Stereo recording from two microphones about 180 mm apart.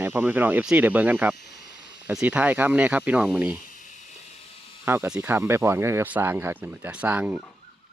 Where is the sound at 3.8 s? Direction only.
45° left (ahead or behind).